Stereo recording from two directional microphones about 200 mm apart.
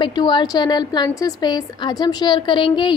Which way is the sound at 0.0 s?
20° left (ahead or behind).